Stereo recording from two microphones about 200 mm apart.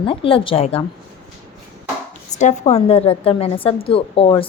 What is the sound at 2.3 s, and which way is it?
Speech, 35° left (ahead or behind).